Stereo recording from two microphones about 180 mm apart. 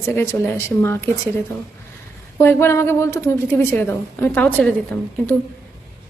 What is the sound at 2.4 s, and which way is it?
A woman's voice, 15° left (ahead or behind).